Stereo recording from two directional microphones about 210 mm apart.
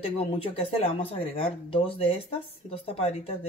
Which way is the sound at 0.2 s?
30° left (ahead or behind).